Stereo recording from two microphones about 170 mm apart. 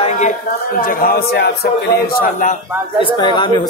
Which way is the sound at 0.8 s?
60° left (ahead or behind).